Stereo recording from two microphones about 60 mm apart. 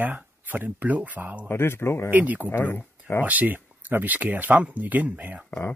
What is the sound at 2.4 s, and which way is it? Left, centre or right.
Speech, left.